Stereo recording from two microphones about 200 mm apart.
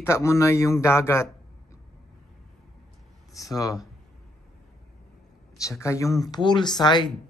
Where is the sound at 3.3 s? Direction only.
15° left (ahead or behind).